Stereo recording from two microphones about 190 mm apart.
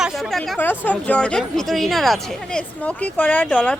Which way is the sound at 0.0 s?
Centre (ahead or behind).